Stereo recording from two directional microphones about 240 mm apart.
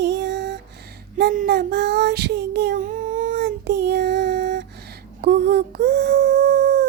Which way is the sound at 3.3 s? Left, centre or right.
Right.